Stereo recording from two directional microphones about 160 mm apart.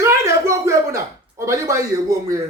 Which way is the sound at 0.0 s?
20° right (ahead or behind).